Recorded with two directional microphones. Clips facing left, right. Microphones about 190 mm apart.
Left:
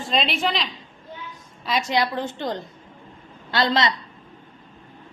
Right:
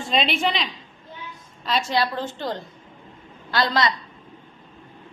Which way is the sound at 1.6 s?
15° left (ahead or behind).